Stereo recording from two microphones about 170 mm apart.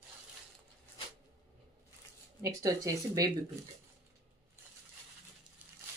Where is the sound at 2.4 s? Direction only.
20° right (ahead or behind).